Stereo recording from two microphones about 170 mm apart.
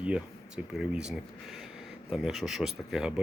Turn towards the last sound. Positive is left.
turn(degrees=0)  # may be behind; listen again after turning